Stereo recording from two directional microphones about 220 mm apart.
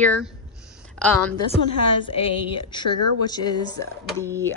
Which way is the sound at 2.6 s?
20° left (ahead or behind).